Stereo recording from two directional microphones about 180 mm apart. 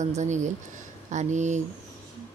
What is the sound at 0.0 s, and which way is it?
Speech, 40° right (ahead or behind).